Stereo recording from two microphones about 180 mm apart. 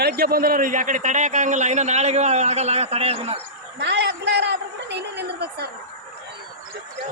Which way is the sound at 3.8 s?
70° right (ahead or behind).